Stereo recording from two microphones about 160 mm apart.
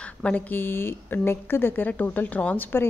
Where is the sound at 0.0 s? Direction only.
5° left (ahead or behind).